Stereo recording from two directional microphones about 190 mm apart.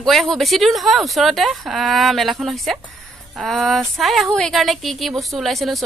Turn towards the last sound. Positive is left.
turn(degrees=0)  # may be behind; listen again after turning